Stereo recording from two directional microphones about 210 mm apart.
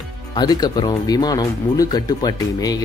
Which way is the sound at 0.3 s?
20° left (ahead or behind).